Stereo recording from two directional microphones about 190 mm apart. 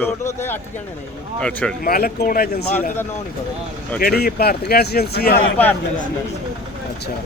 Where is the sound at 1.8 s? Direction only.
50° left (ahead or behind).